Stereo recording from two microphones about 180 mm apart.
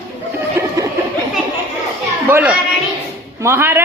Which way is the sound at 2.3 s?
10° right (ahead or behind).